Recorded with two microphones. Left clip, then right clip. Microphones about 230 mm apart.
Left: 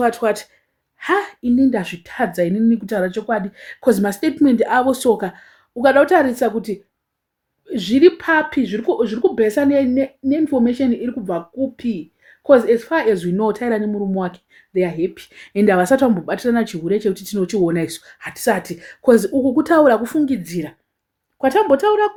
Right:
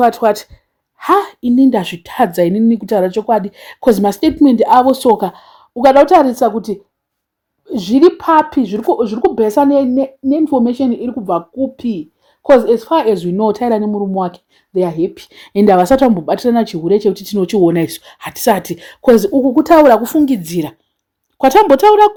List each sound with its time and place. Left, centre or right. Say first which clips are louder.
0.0 s speech: right 6 dB; right